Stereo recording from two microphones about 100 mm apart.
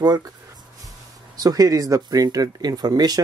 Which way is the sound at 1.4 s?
35° right (ahead or behind).